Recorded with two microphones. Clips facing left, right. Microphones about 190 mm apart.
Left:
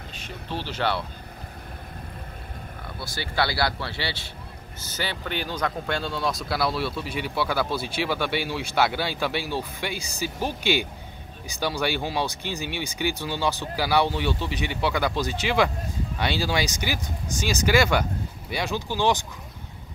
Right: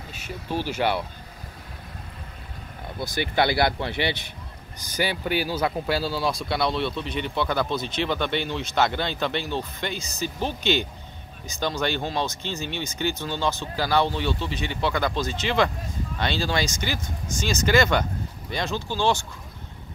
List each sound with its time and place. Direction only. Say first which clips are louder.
0.1 s speech: right 4 dB; 10° right (ahead or behind)
3.0 s speech: right 4 dB; 20° right (ahead or behind); by 19.2 s 15° left (ahead or behind)